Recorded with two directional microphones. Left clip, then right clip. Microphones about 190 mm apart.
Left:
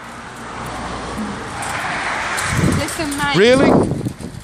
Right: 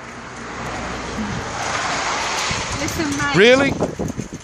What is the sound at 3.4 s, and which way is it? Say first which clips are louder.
Speech: left 1 dB; centre (ahead or behind).